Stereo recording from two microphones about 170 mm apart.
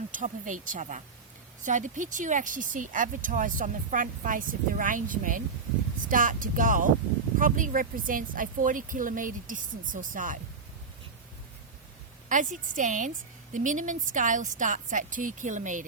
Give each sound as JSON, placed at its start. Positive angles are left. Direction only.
{"t": 0.2, "sound": "speech", "side_deg": -50}
{"t": 12.3, "sound": "speech", "side_deg": -50}